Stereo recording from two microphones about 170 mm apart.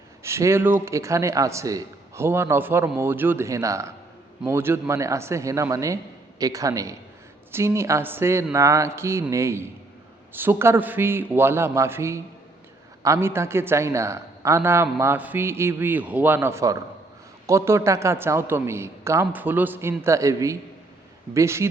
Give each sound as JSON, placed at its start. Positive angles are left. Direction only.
{"t": 0.2, "sound": "a man's voice", "side_deg": -15}